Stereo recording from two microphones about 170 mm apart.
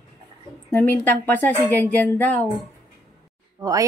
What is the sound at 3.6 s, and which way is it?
Speech, 20° right (ahead or behind).